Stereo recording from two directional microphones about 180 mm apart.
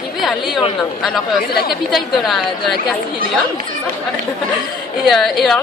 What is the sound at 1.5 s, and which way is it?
Speech, 60° left (ahead or behind).